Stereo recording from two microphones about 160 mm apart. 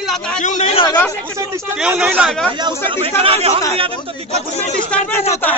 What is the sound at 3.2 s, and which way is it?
Speech, 40° right (ahead or behind).